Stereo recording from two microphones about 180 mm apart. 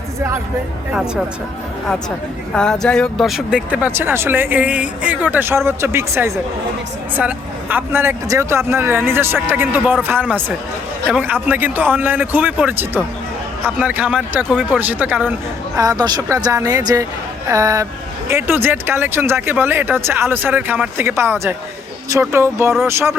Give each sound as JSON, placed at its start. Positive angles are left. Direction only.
{"t": 2.6, "sound": "speech", "side_deg": 5}
{"t": 15.7, "sound": "a woman's voice", "side_deg": -20}